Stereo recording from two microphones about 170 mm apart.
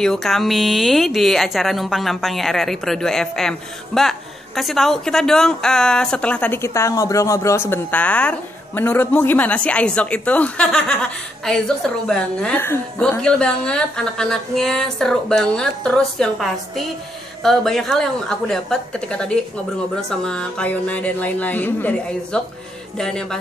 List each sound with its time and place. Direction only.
0.0 s speech: centre (ahead or behind)